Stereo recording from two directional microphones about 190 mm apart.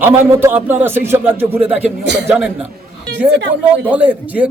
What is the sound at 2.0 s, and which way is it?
Speech, 65° right (ahead or behind).